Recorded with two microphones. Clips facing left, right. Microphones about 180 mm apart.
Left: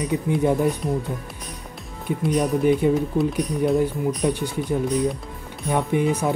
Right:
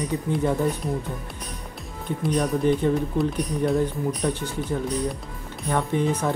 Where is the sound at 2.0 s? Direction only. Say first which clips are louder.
Left 2 dB; 10° left (ahead or behind).